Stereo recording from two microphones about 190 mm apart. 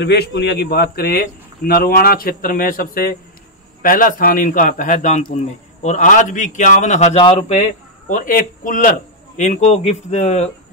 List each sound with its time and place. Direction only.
0.0 s a man's voice: 60° left (ahead or behind); by 7.6 s 30° left (ahead or behind)
8.1 s a man's voice: 45° left (ahead or behind)